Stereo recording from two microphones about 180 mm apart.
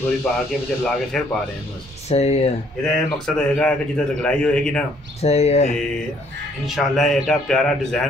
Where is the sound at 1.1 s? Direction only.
5° left (ahead or behind).